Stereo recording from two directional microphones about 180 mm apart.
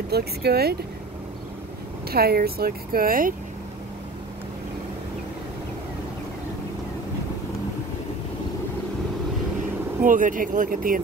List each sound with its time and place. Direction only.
0.1 s speech: 60° right (ahead or behind)
2.0 s speech: 60° right (ahead or behind)
10.0 s speech: 45° right (ahead or behind)